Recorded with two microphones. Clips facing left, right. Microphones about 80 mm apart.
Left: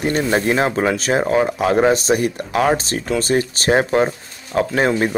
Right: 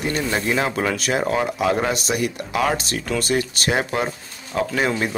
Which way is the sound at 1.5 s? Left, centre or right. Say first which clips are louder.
Left 5 dB; left.